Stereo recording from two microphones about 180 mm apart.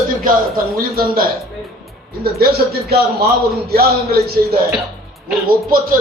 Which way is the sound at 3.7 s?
60° right (ahead or behind).